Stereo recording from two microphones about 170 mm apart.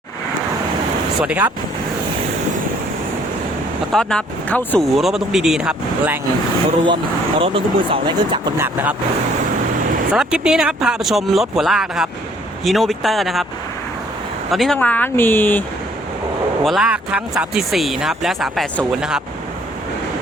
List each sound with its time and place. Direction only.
1.2 s speech: 5° right (ahead or behind)
3.9 s speech: 5° left (ahead or behind)
6.8 s speech: 30° right (ahead or behind)
8.5 s speech: 10° right (ahead or behind)
10.1 s speech: 5° right (ahead or behind)
14.5 s speech: centre (ahead or behind)
16.6 s speech: 5° right (ahead or behind)